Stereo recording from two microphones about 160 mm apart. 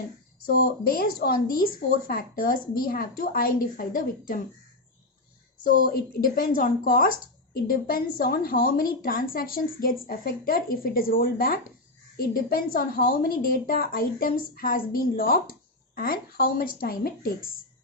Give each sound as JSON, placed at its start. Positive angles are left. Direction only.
{"t": 0.4, "sound": "a woman's voice", "side_deg": 70}
{"t": 5.6, "sound": "a woman's voice", "side_deg": 70}